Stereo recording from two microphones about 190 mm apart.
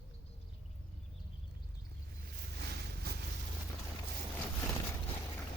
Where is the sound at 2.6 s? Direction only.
60° right (ahead or behind).